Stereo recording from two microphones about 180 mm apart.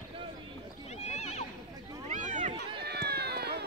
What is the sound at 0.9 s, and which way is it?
Neigh, 35° left (ahead or behind).